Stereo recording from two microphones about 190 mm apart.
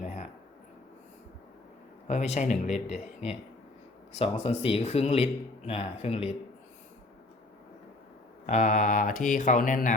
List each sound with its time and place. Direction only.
0.0 s a sound: 35° left (ahead or behind)
2.0 s speech: 40° left (ahead or behind)
8.4 s speech: 40° left (ahead or behind)